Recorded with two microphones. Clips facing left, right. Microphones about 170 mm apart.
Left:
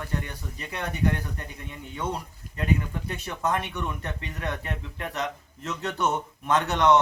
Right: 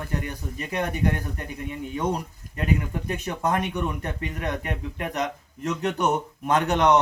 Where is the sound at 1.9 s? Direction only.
15° right (ahead or behind).